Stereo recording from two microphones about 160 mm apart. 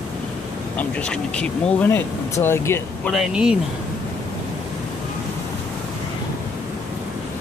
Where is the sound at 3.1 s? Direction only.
5° right (ahead or behind).